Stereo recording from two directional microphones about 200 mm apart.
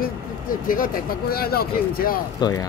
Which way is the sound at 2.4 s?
20° left (ahead or behind).